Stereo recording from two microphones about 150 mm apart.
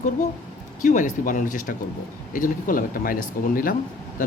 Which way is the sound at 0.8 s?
60° left (ahead or behind).